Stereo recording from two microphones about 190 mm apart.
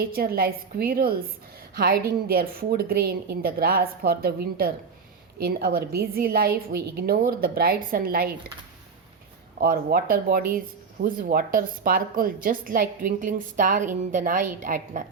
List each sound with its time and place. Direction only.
0.0 s a woman's voice: 50° right (ahead or behind)
9.6 s a woman's voice: 50° right (ahead or behind)